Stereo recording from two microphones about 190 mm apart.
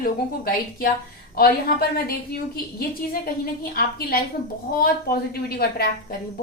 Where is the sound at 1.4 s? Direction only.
50° left (ahead or behind).